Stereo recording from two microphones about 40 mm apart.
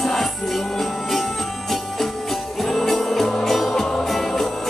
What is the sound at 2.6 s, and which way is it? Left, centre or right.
Music, centre.